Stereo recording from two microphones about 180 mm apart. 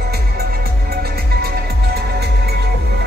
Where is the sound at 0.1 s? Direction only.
60° right (ahead or behind).